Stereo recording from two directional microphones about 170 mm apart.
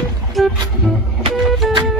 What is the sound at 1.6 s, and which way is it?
Music, centre (ahead or behind).